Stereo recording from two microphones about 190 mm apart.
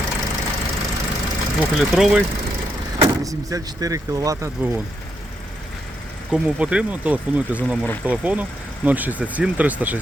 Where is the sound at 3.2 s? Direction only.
15° right (ahead or behind).